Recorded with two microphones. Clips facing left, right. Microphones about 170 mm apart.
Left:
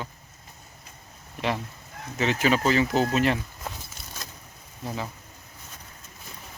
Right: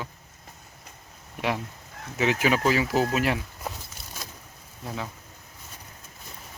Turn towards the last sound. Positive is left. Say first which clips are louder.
# left 2 dB
turn(degrees=0)  # may be behind; listen again after turning